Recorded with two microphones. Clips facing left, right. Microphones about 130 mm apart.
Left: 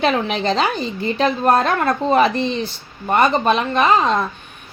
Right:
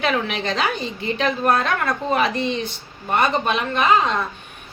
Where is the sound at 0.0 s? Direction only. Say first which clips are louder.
Left 4 dB; 35° left (ahead or behind).